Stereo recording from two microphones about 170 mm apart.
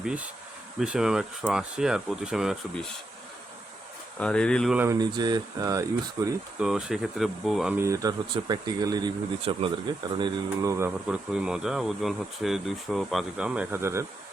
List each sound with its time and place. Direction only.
0.0 s speech: 5° right (ahead or behind)
4.2 s speech: 5° left (ahead or behind)
4.8 s speech: 20° right (ahead or behind)
6.6 s speech: 5° right (ahead or behind)
7.8 s speech: 20° right (ahead or behind)
10.2 s speech: 20° right (ahead or behind)